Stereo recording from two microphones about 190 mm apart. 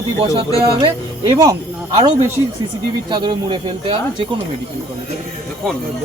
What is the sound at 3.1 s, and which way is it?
Speech, 25° right (ahead or behind).